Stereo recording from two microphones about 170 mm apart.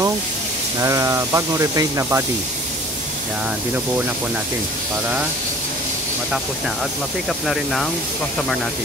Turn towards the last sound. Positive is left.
turn(degrees=0)  # may be behind; listen again after turning